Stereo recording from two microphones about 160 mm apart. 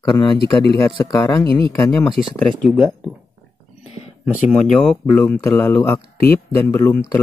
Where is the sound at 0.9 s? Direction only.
25° left (ahead or behind).